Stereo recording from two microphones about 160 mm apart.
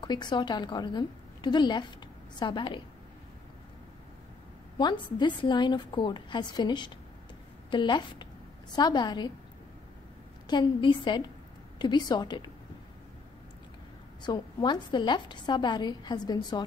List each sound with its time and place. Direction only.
0.0 s a woman's voice: 30° left (ahead or behind)
4.7 s a woman's voice: 25° left (ahead or behind)
10.4 s a woman's voice: 30° left (ahead or behind)
14.2 s a woman's voice: 25° left (ahead or behind)